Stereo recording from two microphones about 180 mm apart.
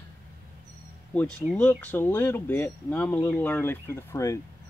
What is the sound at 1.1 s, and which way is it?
Speech, 5° left (ahead or behind).